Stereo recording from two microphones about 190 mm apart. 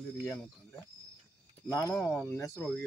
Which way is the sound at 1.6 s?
15° left (ahead or behind).